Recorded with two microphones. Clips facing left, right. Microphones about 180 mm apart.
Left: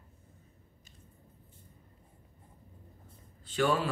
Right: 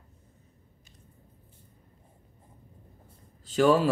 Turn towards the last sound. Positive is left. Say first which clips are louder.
# right 7 dB
turn(degrees=-40)  # may be behind; listen again after turning